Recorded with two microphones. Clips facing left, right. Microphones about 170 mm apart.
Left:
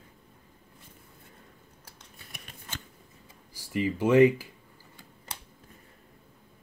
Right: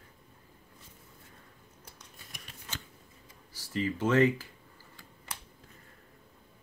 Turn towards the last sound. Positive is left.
turn(degrees=25)  # may be behind; listen again after turning